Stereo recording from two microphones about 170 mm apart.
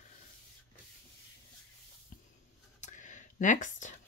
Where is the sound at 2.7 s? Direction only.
45° left (ahead or behind).